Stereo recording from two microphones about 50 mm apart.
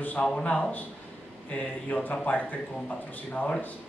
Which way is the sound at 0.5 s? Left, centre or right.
Left.